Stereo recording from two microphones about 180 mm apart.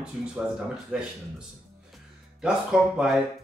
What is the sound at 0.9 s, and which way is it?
Speech, 5° right (ahead or behind).